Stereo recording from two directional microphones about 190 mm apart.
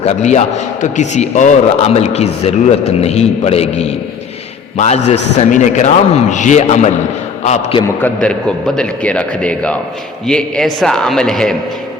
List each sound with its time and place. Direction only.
0.0 s a man's voice: 35° left (ahead or behind)
8.0 s a man's voice: 5° left (ahead or behind)